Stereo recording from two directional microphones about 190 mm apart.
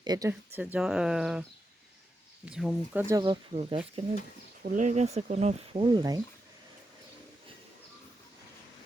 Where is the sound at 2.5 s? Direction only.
5° right (ahead or behind).